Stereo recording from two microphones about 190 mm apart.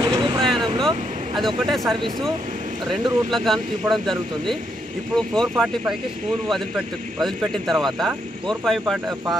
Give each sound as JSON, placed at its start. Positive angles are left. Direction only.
{"t": 0.0, "sound": "vehicle", "side_deg": -20}
{"t": 0.8, "sound": "speech", "side_deg": 0}
{"t": 7.2, "sound": "speech", "side_deg": 0}